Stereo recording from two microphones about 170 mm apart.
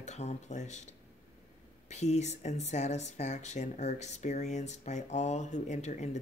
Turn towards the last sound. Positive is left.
turn(degrees=45)  # may be behind; listen again after turning